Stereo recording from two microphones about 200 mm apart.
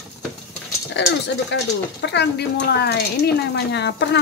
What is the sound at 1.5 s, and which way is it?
Speech, 60° left (ahead or behind).